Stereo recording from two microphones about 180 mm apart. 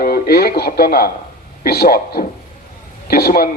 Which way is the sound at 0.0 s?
60° left (ahead or behind).